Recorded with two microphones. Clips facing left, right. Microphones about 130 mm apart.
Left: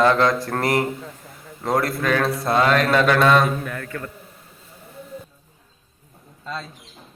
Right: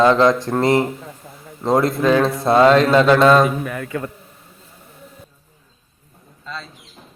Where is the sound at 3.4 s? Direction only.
5° right (ahead or behind).